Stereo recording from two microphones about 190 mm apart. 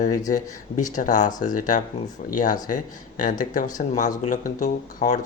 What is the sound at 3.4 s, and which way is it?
Speech, 40° left (ahead or behind).